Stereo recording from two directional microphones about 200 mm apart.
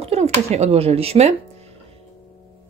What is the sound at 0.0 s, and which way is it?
Speech, 30° right (ahead or behind).